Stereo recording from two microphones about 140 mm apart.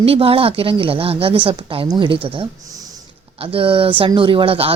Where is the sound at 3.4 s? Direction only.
40° right (ahead or behind).